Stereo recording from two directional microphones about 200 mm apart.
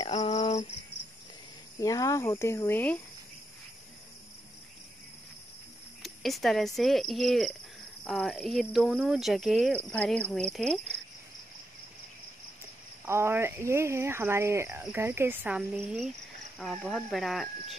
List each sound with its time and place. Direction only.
0.0 s a sound: 25° left (ahead or behind)
1.8 s speech: 15° left (ahead or behind)
6.0 s speech: centre (ahead or behind)
9.9 s speech: 5° left (ahead or behind)
13.0 s speech: 10° right (ahead or behind)